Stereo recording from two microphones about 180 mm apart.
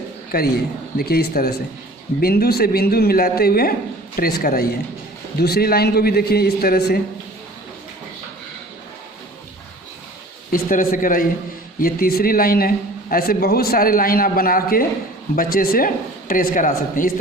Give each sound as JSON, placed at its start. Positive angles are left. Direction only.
{"t": 0.3, "sound": "a man's voice", "side_deg": 60}
{"t": 10.5, "sound": "a man's voice", "side_deg": 45}